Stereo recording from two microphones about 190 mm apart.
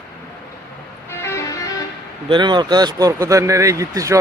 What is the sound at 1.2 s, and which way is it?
Music, 15° left (ahead or behind).